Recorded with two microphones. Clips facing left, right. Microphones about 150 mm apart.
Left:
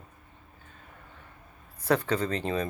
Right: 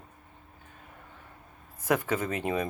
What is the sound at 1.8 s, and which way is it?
Speech, 15° right (ahead or behind).